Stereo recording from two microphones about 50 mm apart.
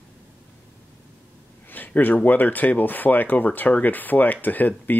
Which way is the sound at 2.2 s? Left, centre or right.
Left.